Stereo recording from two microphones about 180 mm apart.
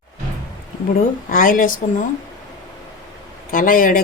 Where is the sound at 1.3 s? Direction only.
50° left (ahead or behind).